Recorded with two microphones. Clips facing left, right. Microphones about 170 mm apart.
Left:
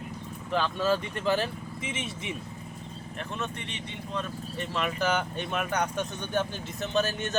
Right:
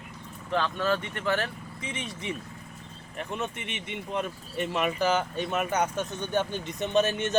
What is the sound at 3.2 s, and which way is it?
Speech, 15° right (ahead or behind).